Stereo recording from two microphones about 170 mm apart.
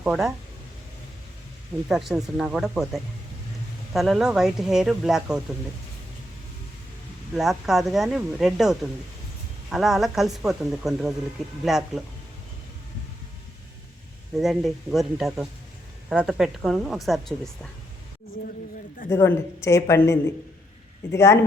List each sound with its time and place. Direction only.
0.0 s a woman's voice: centre (ahead or behind)
1.9 s a woman's voice: centre (ahead or behind)
7.3 s a woman's voice: centre (ahead or behind)
14.3 s a woman's voice: centre (ahead or behind)
19.1 s speech: 15° left (ahead or behind)